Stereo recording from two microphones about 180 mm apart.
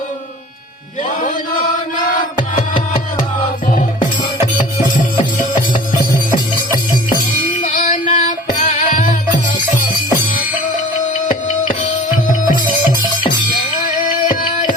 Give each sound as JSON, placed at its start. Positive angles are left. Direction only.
{"t": 6.3, "sound": "music", "side_deg": 50}
{"t": 11.3, "sound": "music", "side_deg": 45}